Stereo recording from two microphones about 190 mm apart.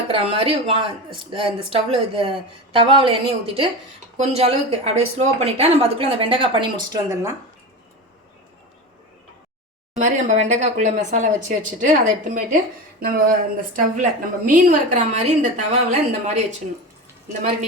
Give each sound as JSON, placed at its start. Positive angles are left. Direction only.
{"t": 0.1, "sound": "speech", "side_deg": -30}
{"t": 10.0, "sound": "a woman's voice", "side_deg": -40}
{"t": 13.0, "sound": "a woman's voice", "side_deg": -50}